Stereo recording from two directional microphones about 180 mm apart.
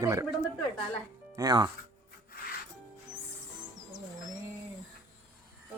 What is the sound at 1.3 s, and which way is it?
Speech, 20° right (ahead or behind).